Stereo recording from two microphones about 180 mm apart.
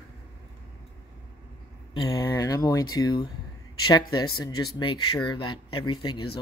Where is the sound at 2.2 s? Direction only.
20° left (ahead or behind).